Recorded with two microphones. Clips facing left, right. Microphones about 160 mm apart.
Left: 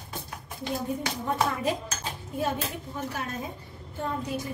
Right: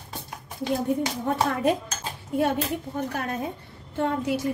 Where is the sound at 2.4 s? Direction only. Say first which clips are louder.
Right 6 dB; 60° right (ahead or behind).